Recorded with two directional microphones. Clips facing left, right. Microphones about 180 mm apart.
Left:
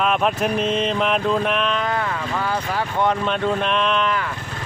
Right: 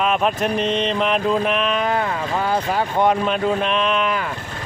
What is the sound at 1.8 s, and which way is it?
Speech, 25° right (ahead or behind).